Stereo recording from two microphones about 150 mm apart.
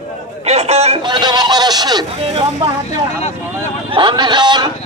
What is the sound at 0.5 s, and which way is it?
Chatter, 45° right (ahead or behind).